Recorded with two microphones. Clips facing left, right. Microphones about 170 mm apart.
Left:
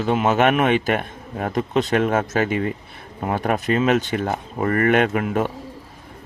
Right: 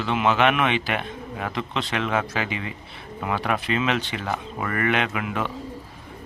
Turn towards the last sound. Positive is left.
turn(degrees=45)  # may be behind; listen again after turning